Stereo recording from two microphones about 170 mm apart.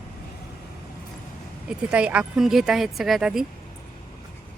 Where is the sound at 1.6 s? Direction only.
5° right (ahead or behind).